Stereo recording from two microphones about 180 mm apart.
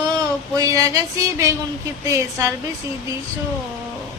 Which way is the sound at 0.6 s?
20° right (ahead or behind).